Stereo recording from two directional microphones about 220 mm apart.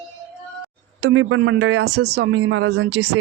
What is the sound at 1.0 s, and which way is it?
Speech, 60° right (ahead or behind).